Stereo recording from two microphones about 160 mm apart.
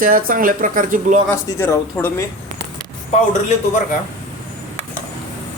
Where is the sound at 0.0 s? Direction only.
60° right (ahead or behind).